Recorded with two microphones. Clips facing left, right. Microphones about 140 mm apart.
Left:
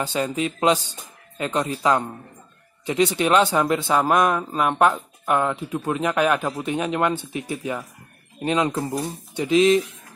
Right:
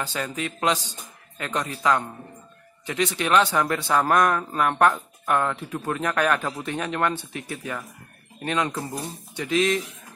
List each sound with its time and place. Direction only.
0.1 s speech: 20° left (ahead or behind)